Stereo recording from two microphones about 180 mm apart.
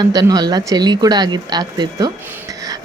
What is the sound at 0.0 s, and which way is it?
Speech, 20° right (ahead or behind).